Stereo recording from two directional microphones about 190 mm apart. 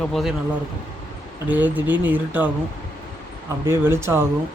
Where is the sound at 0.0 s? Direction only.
Centre (ahead or behind).